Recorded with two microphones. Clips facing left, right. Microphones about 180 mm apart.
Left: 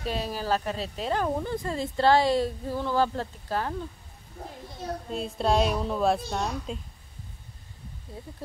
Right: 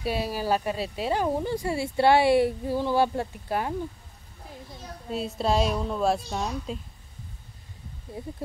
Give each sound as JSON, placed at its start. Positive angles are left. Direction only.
{"t": 0.0, "sound": "speech", "side_deg": -10}
{"t": 5.1, "sound": "a woman's voice", "side_deg": -5}
{"t": 8.2, "sound": "speech", "side_deg": -15}